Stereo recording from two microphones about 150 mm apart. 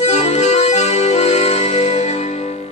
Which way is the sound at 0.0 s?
45° left (ahead or behind).